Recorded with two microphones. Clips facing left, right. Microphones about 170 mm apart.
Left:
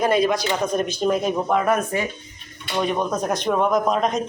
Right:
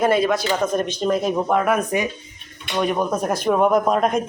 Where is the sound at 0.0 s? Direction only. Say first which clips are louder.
Right 1 dB; centre (ahead or behind).